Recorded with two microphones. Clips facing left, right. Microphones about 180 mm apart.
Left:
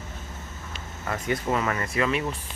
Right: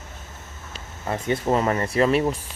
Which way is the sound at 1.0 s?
25° right (ahead or behind).